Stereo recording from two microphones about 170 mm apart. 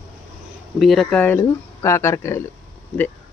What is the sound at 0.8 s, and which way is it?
Speech, centre (ahead or behind).